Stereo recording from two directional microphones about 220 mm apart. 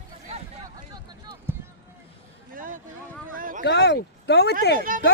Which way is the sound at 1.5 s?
10° right (ahead or behind).